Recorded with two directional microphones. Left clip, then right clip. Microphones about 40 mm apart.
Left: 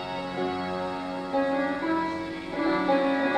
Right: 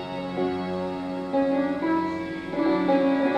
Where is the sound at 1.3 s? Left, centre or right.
Left.